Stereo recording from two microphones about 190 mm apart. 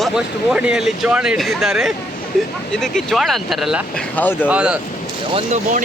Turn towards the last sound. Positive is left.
turn(degrees=-40)  # may be behind; listen again after turning